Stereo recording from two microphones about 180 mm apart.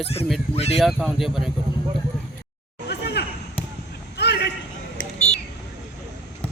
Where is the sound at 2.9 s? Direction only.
70° left (ahead or behind).